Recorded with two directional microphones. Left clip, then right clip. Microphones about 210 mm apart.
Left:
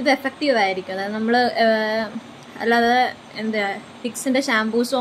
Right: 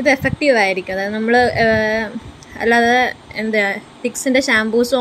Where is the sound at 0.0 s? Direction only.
15° right (ahead or behind).